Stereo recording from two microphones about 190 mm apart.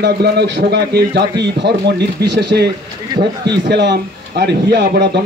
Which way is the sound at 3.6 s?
65° right (ahead or behind).